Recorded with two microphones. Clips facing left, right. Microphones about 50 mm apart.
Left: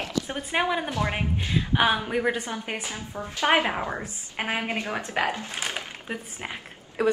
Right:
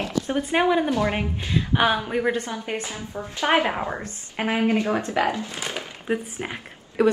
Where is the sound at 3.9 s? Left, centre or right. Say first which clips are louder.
Right 1 dB; centre.